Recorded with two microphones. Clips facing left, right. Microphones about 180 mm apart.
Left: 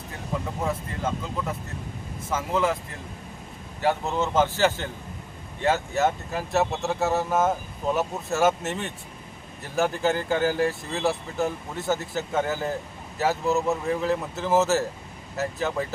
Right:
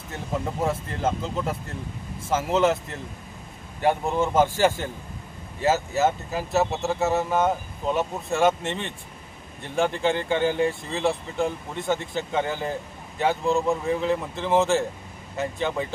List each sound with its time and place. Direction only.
0.7 s speech: 30° right (ahead or behind)
3.8 s speech: 15° right (ahead or behind); by 15.9 s 5° left (ahead or behind)